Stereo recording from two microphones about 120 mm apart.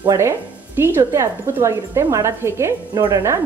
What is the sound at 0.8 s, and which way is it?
A woman's voice, 20° right (ahead or behind).